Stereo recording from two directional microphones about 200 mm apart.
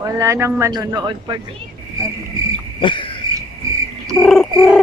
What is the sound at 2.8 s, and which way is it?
Cricket, 25° left (ahead or behind).